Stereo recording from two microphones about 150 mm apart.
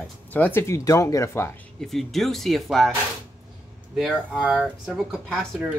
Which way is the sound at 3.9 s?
Centre (ahead or behind).